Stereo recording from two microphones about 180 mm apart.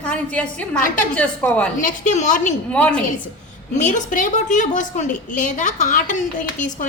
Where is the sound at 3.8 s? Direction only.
45° left (ahead or behind).